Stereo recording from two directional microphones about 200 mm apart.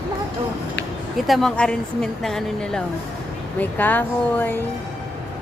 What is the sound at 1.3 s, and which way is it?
A woman's voice, 5° left (ahead or behind).